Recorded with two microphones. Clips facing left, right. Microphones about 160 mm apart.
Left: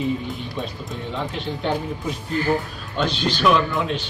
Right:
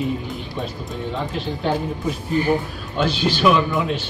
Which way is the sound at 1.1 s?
Centre (ahead or behind).